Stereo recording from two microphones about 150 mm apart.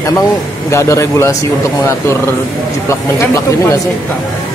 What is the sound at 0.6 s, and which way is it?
Speech, 20° left (ahead or behind).